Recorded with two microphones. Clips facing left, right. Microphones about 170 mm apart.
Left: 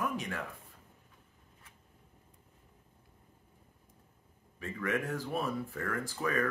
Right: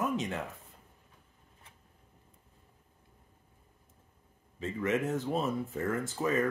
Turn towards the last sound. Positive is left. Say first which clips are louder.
# right 3 dB
turn(degrees=-20)  # may be behind; listen again after turning